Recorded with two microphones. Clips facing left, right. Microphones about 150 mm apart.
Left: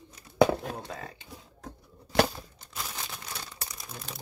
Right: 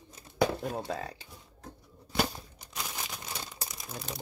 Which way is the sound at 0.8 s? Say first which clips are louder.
Right 4 dB; 35° right (ahead or behind).